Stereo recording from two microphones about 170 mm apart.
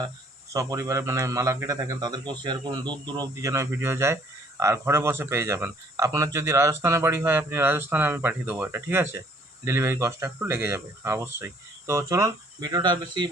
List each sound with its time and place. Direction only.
0.5 s speech: 20° right (ahead or behind)